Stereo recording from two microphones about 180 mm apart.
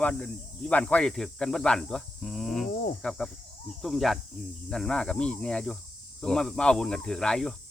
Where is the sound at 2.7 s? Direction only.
55° left (ahead or behind).